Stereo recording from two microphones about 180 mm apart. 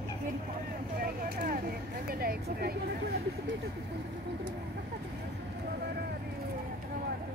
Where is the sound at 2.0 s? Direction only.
55° right (ahead or behind).